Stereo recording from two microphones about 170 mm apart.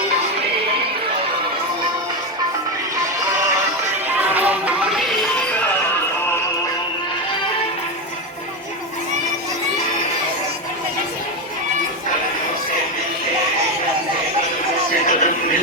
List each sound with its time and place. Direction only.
4.4 s music: 10° right (ahead or behind)
15.0 s music: 50° left (ahead or behind)